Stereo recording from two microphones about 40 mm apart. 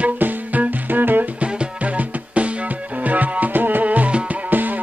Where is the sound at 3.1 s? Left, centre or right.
Right.